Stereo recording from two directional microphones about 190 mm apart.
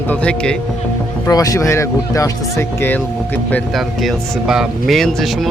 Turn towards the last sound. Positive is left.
turn(degrees=0)  # may be behind; listen again after turning